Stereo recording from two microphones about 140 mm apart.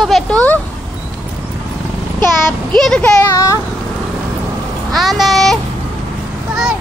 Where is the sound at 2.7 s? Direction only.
5° left (ahead or behind).